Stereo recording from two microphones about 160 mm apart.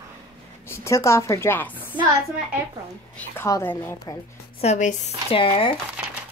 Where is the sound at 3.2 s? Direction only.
15° left (ahead or behind).